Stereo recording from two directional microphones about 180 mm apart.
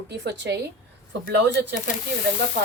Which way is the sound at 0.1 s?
65° right (ahead or behind).